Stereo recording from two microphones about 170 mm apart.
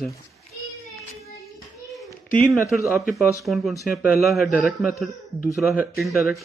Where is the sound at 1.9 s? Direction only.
10° left (ahead or behind).